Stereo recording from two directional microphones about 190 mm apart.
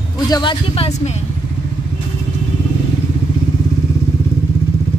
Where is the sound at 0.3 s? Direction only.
25° left (ahead or behind).